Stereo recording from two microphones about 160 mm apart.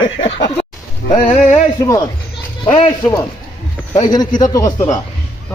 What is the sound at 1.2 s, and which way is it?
Speech, 45° left (ahead or behind).